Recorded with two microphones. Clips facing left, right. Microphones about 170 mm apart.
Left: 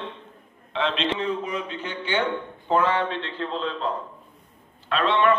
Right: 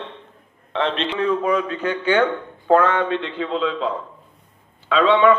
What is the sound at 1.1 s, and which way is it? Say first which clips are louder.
A man's voice: right 8 dB; 60° right (ahead or behind).